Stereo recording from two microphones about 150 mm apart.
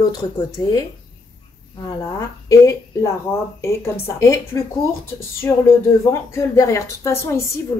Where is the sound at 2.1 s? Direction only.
20° left (ahead or behind).